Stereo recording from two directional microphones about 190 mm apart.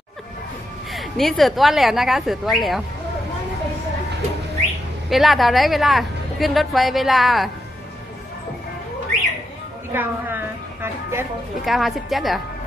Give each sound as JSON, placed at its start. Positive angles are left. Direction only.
{"t": 0.9, "sound": "a woman's voice", "side_deg": 0}
{"t": 5.1, "sound": "a woman's voice", "side_deg": 0}
{"t": 9.9, "sound": "a sound", "side_deg": -10}
{"t": 11.6, "sound": "a woman's voice", "side_deg": 0}